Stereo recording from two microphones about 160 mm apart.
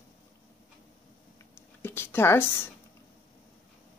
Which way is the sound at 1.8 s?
15° left (ahead or behind).